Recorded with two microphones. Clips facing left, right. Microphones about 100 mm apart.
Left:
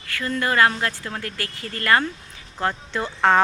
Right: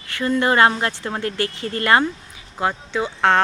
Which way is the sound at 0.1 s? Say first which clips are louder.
Right 5 dB; 25° right (ahead or behind).